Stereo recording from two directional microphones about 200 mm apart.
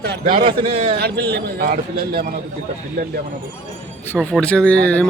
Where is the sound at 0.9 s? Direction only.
55° right (ahead or behind).